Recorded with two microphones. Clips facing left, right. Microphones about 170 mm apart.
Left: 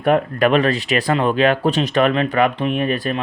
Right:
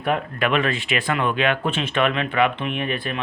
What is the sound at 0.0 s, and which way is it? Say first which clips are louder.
Speech: left 7 dB; 45° left (ahead or behind).